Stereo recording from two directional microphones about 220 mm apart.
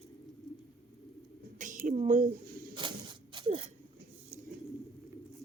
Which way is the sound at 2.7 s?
20° right (ahead or behind).